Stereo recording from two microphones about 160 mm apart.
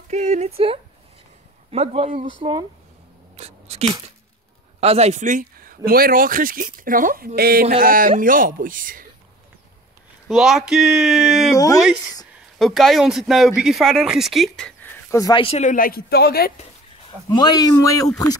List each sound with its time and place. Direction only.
0.1 s speech: 45° right (ahead or behind)
3.3 s a sound: 40° right (ahead or behind)
4.7 s a man's voice: 40° right (ahead or behind); by 9.0 s 60° right (ahead or behind)
10.2 s speech: centre (ahead or behind)
11.5 s speech: 20° left (ahead or behind)
12.5 s speech: centre (ahead or behind)
15.0 s speech: 20° left (ahead or behind)
15.4 s speech: 45° left (ahead or behind); by 16.5 s 80° left
17.3 s speech: 25° left (ahead or behind)